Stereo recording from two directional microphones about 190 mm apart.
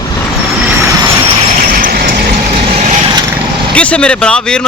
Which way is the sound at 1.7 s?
45° right (ahead or behind).